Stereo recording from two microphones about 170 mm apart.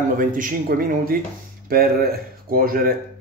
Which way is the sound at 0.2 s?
55° right (ahead or behind).